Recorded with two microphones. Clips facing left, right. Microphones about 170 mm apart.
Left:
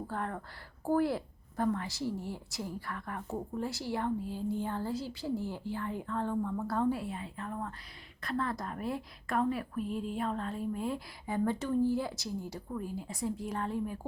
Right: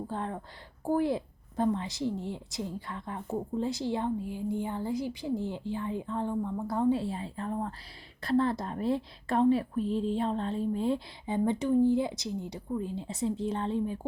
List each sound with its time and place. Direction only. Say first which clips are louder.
0.1 s a woman's voice: right 2 dB; 20° right (ahead or behind)
7.0 s a woman's voice: right 5 dB; 30° right (ahead or behind)